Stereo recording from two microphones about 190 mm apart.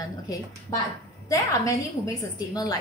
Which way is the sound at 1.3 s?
15° left (ahead or behind).